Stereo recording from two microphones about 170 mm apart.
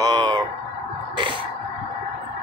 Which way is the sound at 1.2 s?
30° right (ahead or behind).